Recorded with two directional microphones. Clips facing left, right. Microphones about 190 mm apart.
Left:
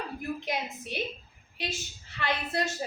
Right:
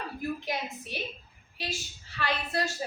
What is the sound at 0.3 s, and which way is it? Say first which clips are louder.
Speech: left 1 dB; 20° left (ahead or behind).